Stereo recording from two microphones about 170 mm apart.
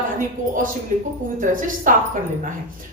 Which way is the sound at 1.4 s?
50° right (ahead or behind).